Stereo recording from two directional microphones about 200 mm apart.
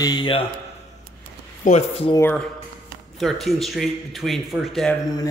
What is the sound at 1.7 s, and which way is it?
Speech, 30° left (ahead or behind).